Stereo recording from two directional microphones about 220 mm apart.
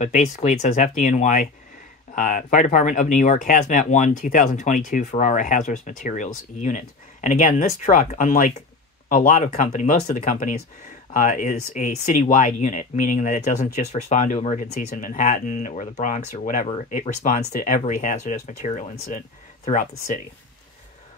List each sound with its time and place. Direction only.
0.0 s speech: 30° left (ahead or behind)